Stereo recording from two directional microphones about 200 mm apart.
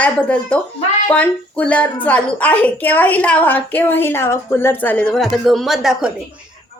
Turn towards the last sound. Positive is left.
turn(degrees=0)  # may be behind; listen again after turning